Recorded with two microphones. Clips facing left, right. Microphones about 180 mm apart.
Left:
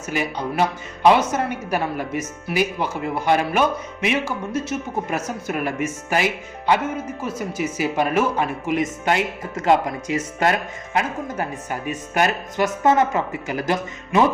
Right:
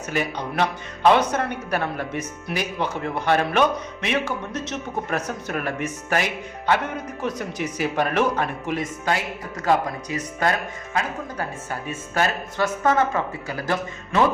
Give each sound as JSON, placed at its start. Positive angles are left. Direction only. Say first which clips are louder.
{"t": 0.1, "sound": "speech", "louder": "left 2 dB", "side_deg": 10}
{"t": 8.8, "sound": "speech", "louder": "left 5 dB", "side_deg": 25}